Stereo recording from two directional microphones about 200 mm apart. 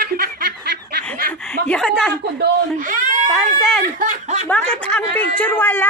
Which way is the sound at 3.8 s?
40° right (ahead or behind).